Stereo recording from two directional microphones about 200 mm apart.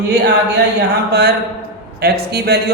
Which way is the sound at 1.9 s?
50° right (ahead or behind).